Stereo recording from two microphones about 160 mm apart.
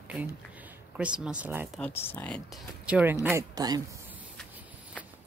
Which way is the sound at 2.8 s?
10° right (ahead or behind).